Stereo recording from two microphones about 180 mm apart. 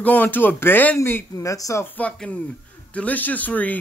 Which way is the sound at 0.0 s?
10° left (ahead or behind).